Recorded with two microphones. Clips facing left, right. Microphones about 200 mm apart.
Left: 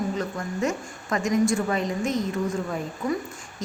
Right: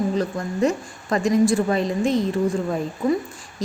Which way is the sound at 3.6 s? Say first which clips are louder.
Right 6 dB; 35° right (ahead or behind).